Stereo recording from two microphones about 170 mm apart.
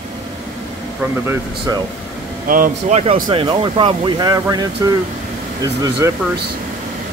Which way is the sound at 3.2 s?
30° right (ahead or behind).